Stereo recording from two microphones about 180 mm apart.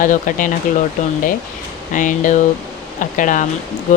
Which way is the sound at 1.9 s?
45° left (ahead or behind).